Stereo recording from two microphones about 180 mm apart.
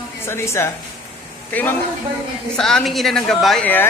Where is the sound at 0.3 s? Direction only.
15° left (ahead or behind).